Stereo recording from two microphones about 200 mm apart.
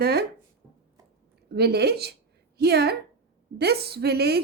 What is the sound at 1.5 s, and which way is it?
A woman's voice, 55° right (ahead or behind).